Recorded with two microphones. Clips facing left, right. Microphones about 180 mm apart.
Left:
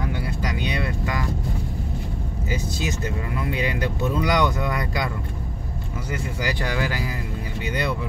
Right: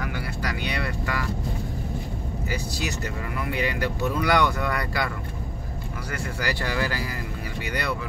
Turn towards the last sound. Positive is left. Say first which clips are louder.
# left 1 dB
turn(degrees=15)  # may be behind; listen again after turning